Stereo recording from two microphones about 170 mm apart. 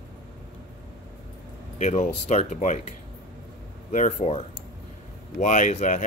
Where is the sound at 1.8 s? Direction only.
45° left (ahead or behind).